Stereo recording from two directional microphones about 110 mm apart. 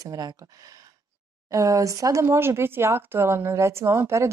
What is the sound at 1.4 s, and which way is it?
Speech, 30° right (ahead or behind).